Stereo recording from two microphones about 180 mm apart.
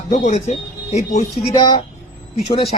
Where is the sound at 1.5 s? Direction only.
25° left (ahead or behind).